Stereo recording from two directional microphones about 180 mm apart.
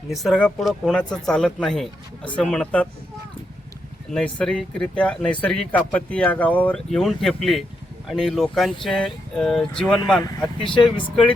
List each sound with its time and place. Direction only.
0.1 s speech: centre (ahead or behind)
4.1 s speech: 5° left (ahead or behind)
10.6 s speech: 30° left (ahead or behind)